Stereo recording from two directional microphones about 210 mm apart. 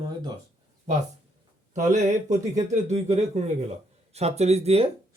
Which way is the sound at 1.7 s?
35° right (ahead or behind).